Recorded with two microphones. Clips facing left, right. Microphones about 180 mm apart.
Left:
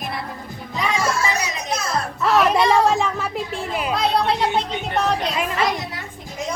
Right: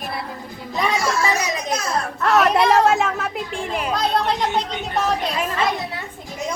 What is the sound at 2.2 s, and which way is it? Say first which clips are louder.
A child's voice: even; centre (ahead or behind).